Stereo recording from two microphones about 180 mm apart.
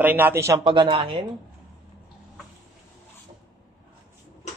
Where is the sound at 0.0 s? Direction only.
10° right (ahead or behind).